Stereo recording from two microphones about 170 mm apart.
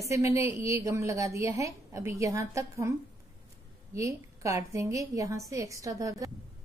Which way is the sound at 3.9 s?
20° right (ahead or behind).